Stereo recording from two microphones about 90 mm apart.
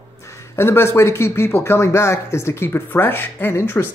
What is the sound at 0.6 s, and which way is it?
Speech, 30° left (ahead or behind).